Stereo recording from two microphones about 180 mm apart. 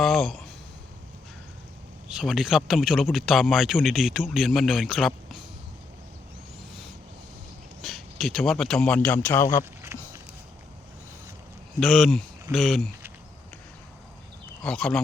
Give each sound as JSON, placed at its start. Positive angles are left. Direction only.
{"t": 0.0, "sound": "a sound", "side_deg": 0}
{"t": 2.0, "sound": "a man's voice", "side_deg": -5}
{"t": 7.8, "sound": "a man's voice", "side_deg": 0}
{"t": 9.8, "sound": "a sound", "side_deg": -15}
{"t": 11.8, "sound": "a man's voice", "side_deg": 0}
{"t": 14.6, "sound": "speech", "side_deg": 5}